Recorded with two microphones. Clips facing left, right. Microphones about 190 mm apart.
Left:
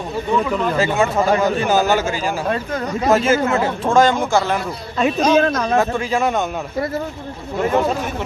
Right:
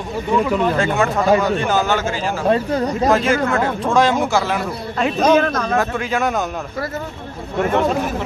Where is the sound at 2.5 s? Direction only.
35° right (ahead or behind).